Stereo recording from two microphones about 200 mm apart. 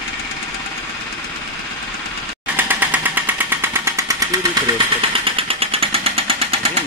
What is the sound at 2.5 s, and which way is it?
Jackhammer, 10° right (ahead or behind).